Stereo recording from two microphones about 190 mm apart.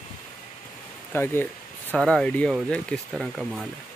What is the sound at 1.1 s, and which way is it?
Speech, 10° left (ahead or behind).